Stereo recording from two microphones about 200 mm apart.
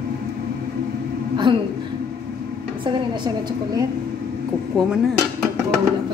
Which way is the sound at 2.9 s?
20° right (ahead or behind).